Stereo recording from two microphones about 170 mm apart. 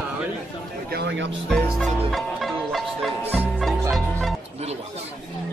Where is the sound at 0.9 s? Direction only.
85° right.